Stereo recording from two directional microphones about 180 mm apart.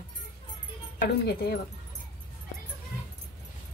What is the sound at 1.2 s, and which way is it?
Speech, 60° left (ahead or behind).